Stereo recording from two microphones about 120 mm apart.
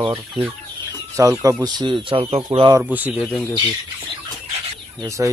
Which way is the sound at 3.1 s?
5° left (ahead or behind).